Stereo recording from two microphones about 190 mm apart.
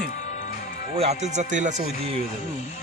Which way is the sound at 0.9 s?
35° right (ahead or behind).